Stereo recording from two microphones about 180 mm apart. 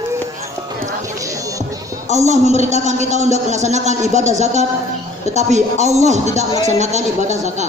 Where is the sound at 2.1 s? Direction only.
40° right (ahead or behind).